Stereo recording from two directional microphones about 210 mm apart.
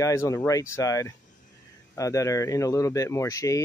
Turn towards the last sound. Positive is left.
turn(degrees=15)  # may be behind; listen again after turning